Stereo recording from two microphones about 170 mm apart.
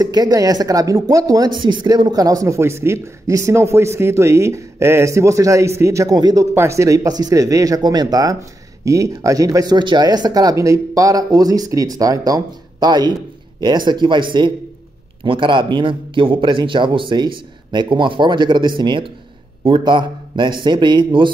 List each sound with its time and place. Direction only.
0.0 s speech: 20° right (ahead or behind)